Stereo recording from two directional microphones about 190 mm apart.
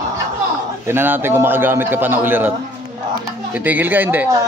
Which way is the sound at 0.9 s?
10° right (ahead or behind).